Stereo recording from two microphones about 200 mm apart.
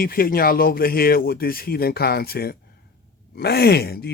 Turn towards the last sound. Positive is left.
turn(degrees=50)  # may be behind; listen again after turning